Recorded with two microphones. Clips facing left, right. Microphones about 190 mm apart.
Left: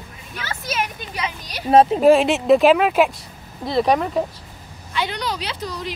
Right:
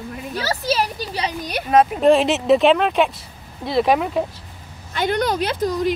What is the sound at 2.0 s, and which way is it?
Speech, centre (ahead or behind).